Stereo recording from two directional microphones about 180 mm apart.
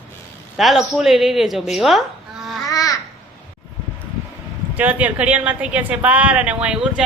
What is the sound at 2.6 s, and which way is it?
Babbling, 20° left (ahead or behind).